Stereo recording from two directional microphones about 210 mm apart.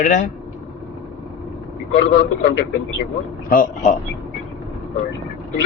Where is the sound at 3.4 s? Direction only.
40° left (ahead or behind).